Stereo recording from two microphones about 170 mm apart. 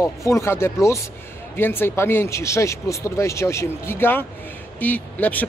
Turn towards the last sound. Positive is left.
turn(degrees=10)  # may be behind; listen again after turning